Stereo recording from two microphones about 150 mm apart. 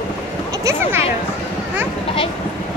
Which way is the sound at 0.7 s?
20° right (ahead or behind).